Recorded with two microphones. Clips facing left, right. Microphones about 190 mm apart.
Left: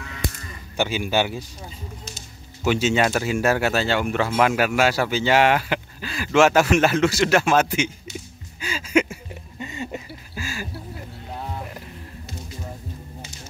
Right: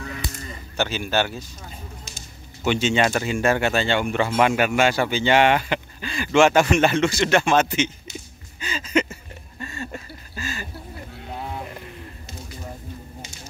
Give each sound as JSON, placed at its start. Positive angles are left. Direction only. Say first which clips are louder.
{"t": 0.2, "sound": "moo", "louder": "left 5 dB", "side_deg": 50}
{"t": 0.7, "sound": "speech", "louder": "left 1 dB", "side_deg": 15}
{"t": 8.5, "sound": "a sound", "louder": "left 2 dB", "side_deg": 5}